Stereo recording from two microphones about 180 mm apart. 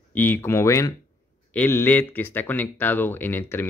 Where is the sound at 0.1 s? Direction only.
10° left (ahead or behind).